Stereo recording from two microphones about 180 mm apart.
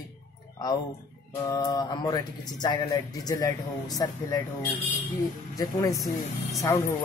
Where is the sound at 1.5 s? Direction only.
20° left (ahead or behind).